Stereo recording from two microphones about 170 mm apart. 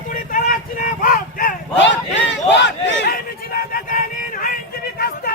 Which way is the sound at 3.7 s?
55° left (ahead or behind).